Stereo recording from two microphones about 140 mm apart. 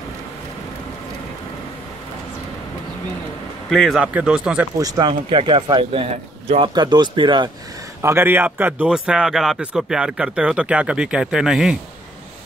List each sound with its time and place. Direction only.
3.7 s speech: 5° left (ahead or behind)
4.0 s speech: 10° right (ahead or behind)
4.7 s speech: 30° right (ahead or behind)
8.0 s speech: 15° right (ahead or behind)